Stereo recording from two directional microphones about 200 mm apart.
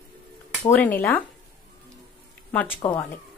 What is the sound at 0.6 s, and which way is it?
Speech, 10° left (ahead or behind).